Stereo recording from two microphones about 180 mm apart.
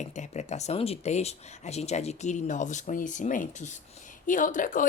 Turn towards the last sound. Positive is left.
turn(degrees=45)  # may be behind; listen again after turning